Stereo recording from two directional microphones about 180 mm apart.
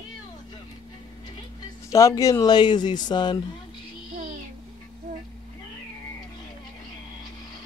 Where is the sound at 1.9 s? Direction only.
15° left (ahead or behind).